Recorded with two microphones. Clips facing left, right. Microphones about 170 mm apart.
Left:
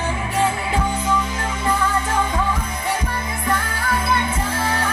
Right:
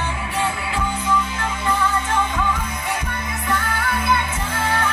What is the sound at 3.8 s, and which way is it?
Music, 30° left (ahead or behind).